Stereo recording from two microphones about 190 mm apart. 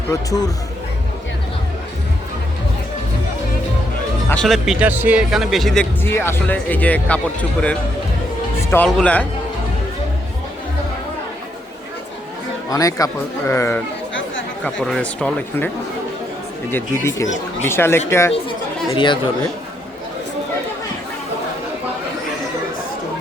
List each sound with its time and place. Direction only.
0.1 s speech: 20° left (ahead or behind)
4.3 s speech: centre (ahead or behind)
8.7 s speech: 5° left (ahead or behind)
12.7 s speech: 20° left (ahead or behind)
14.1 s chatter: 80° left
14.6 s speech: 5° left (ahead or behind)
16.7 s speech: 15° left (ahead or behind)
18.9 s speech: 25° left (ahead or behind)